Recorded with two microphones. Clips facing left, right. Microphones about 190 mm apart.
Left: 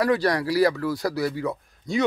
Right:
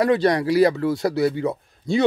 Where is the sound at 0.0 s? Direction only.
25° right (ahead or behind).